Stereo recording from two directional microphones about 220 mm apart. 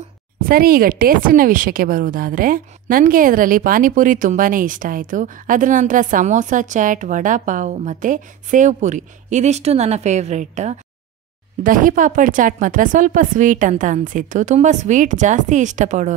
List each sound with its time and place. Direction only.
0.4 s speech: 40° right (ahead or behind)